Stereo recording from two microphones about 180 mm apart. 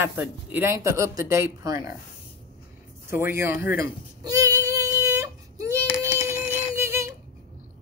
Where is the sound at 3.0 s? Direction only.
15° right (ahead or behind).